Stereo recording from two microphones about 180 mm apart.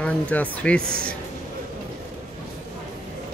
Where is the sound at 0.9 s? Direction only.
55° right (ahead or behind).